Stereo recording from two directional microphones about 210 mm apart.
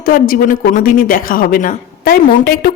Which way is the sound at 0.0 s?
45° left (ahead or behind).